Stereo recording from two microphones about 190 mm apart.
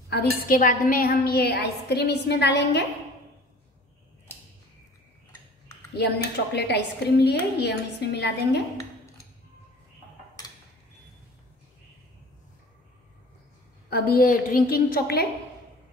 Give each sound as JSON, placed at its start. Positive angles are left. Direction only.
{"t": 0.1, "sound": "a woman's voice", "side_deg": 55}
{"t": 5.9, "sound": "a woman's voice", "side_deg": 60}
{"t": 13.8, "sound": "a woman's voice", "side_deg": 55}